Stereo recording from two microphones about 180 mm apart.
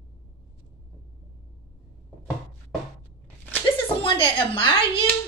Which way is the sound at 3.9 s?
30° left (ahead or behind).